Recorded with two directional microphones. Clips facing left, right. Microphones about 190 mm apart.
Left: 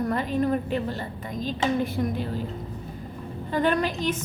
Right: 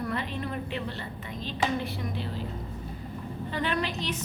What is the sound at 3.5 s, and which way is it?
Speech, 45° left (ahead or behind).